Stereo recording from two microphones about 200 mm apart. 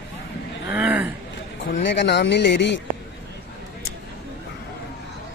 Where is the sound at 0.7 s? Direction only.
10° right (ahead or behind).